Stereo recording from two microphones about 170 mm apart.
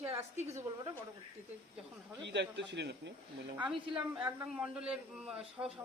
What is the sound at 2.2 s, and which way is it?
Speech, 90° right.